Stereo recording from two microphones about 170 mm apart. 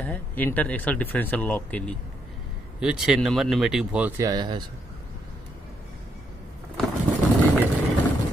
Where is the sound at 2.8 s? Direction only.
5° right (ahead or behind).